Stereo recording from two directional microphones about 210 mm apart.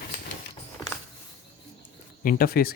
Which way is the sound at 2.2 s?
45° left (ahead or behind).